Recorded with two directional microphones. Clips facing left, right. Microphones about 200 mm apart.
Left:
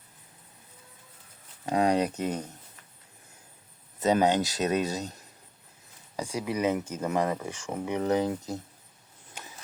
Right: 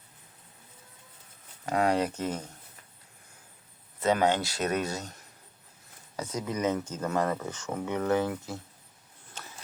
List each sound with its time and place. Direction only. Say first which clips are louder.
1.6 s speech: left 2 dB; 20° left (ahead or behind)
4.0 s speech: left 2 dB; 15° left (ahead or behind)